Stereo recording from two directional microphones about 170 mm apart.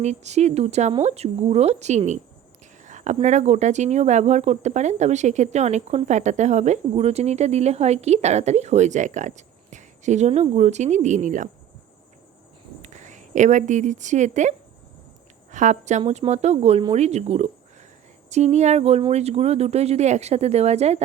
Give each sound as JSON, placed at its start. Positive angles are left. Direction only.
{"t": 0.0, "sound": "speech", "side_deg": -40}
{"t": 12.8, "sound": "a woman's voice", "side_deg": -45}
{"t": 15.5, "sound": "speech", "side_deg": -45}